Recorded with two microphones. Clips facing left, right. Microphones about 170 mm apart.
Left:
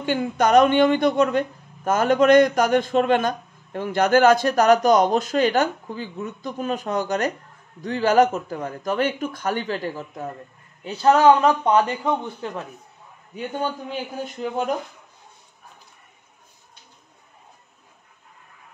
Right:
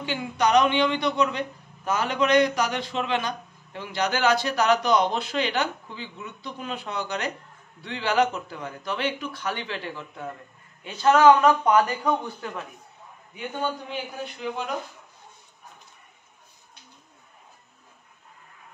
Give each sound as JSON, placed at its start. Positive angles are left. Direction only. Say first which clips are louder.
{"t": 0.0, "sound": "a man's voice", "louder": "left 4 dB", "side_deg": 50}
{"t": 13.8, "sound": "a man's voice", "louder": "left 4 dB", "side_deg": 45}